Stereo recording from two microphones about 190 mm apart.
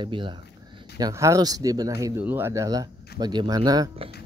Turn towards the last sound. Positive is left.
turn(degrees=-25)  # may be behind; listen again after turning